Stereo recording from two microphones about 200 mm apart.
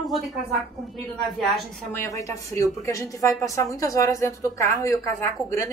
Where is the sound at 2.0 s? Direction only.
15° left (ahead or behind).